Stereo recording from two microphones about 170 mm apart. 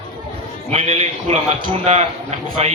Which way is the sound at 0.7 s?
35° right (ahead or behind).